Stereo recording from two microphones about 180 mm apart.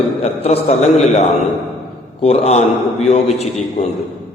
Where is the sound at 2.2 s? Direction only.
35° left (ahead or behind).